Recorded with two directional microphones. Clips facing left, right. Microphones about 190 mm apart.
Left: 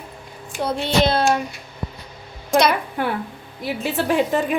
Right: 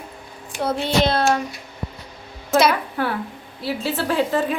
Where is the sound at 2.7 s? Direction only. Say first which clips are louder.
Even; 15° left (ahead or behind).